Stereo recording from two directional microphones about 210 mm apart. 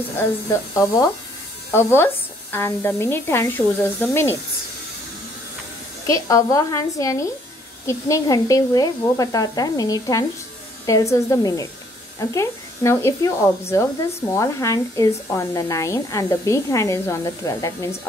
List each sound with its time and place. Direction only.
0.2 s speech: 15° left (ahead or behind)
6.0 s speech: 15° left (ahead or behind)